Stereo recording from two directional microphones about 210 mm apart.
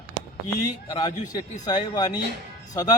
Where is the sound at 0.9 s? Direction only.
20° left (ahead or behind).